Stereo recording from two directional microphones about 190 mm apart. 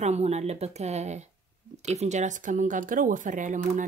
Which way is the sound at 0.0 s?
35° right (ahead or behind).